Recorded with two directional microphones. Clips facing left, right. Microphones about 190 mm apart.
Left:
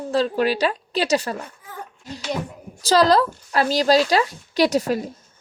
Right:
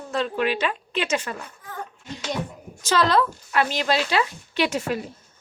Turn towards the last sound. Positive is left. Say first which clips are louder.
# left 5 dB
turn(degrees=40)  # may be behind; listen again after turning